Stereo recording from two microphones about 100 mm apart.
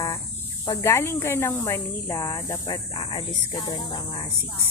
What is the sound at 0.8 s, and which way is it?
Speech, 25° left (ahead or behind).